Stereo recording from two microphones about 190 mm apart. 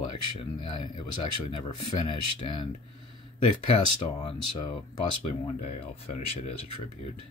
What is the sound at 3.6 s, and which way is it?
Speech, 30° left (ahead or behind).